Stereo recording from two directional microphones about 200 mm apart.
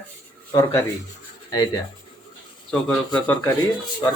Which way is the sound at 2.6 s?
5° left (ahead or behind).